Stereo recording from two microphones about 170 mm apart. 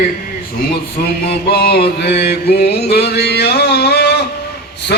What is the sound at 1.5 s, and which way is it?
Mantra, 70° left (ahead or behind).